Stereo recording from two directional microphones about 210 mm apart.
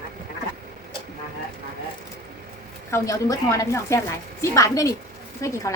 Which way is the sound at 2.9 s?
15° left (ahead or behind).